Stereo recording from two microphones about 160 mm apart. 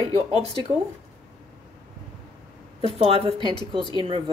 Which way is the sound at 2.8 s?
35° right (ahead or behind).